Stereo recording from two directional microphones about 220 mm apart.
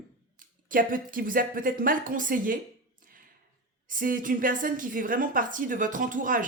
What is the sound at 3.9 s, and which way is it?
Speech, 40° right (ahead or behind).